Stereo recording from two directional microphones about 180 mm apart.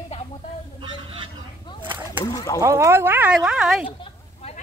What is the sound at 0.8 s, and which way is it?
Vehicle, 30° right (ahead or behind).